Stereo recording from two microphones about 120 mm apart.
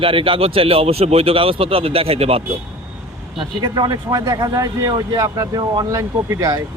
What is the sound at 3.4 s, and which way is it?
Speech, 40° right (ahead or behind).